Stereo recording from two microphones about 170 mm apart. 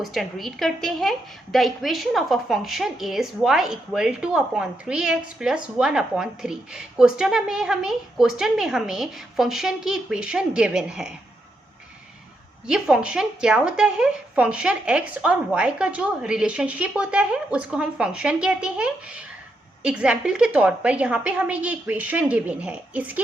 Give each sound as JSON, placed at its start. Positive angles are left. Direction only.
{"t": 0.0, "sound": "a woman's voice", "side_deg": 0}
{"t": 12.6, "sound": "a woman's voice", "side_deg": -5}